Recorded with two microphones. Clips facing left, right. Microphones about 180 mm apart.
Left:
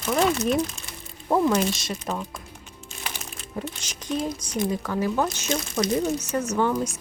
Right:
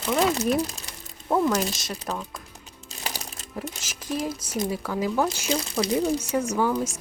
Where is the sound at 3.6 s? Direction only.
5° right (ahead or behind).